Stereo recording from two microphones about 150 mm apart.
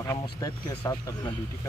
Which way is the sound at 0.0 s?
20° left (ahead or behind).